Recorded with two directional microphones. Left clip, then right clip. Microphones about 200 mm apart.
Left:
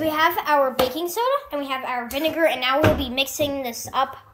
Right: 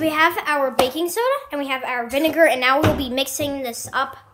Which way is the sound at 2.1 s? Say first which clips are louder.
Right 5 dB; 20° right (ahead or behind).